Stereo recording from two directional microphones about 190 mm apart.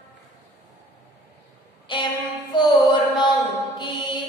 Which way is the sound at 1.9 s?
25° left (ahead or behind).